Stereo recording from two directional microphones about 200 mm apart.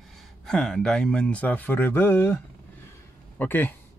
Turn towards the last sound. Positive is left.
turn(degrees=10)  # may be behind; listen again after turning